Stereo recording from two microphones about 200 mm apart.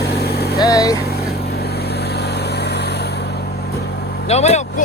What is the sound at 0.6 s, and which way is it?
Vehicle, 20° left (ahead or behind).